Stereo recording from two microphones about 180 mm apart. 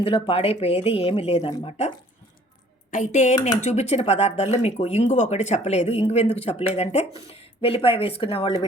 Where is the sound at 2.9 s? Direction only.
45° left (ahead or behind).